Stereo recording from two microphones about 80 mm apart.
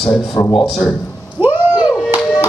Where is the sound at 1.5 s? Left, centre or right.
Left.